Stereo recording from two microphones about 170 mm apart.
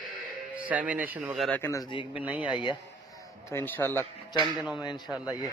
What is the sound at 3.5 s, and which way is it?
Speech, 10° left (ahead or behind).